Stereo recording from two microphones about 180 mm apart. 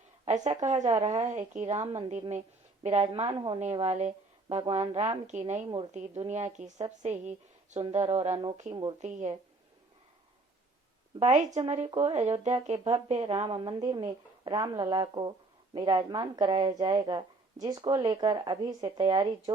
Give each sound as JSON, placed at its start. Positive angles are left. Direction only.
{"t": 0.3, "sound": "a woman's voice", "side_deg": -40}
{"t": 3.6, "sound": "a woman's voice", "side_deg": -40}
{"t": 5.6, "sound": "a woman's voice", "side_deg": -25}
{"t": 5.9, "sound": "a woman's voice", "side_deg": -40}
{"t": 9.0, "sound": "a woman's voice", "side_deg": -40}
{"t": 11.2, "sound": "a woman's voice", "side_deg": -40}
{"t": 13.7, "sound": "a woman's voice", "side_deg": -20}